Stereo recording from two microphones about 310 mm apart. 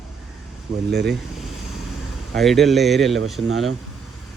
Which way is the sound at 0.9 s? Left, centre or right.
Right.